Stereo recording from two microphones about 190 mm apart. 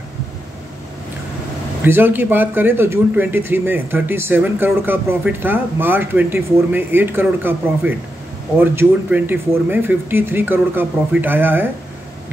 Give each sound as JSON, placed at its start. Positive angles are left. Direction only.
{"t": 1.8, "sound": "speech", "side_deg": -10}